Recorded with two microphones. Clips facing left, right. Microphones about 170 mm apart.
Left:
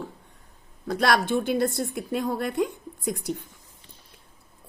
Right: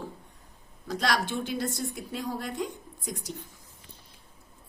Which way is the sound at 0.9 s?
55° left (ahead or behind).